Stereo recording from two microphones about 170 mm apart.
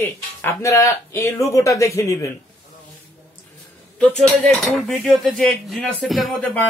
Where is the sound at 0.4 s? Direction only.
15° left (ahead or behind).